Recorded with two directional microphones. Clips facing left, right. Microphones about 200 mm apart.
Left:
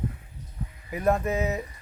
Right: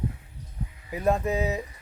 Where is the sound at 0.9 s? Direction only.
15° right (ahead or behind).